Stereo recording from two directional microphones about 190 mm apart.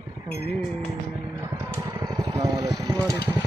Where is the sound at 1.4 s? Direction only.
15° right (ahead or behind).